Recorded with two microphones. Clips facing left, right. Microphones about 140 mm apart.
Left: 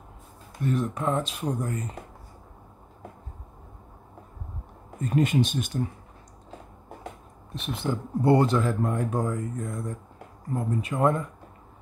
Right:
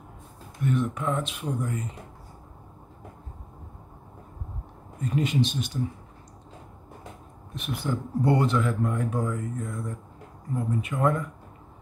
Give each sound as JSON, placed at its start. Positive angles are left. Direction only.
{"t": 0.7, "sound": "speech", "side_deg": 35}
{"t": 5.1, "sound": "speech", "side_deg": 50}
{"t": 7.5, "sound": "speech", "side_deg": 25}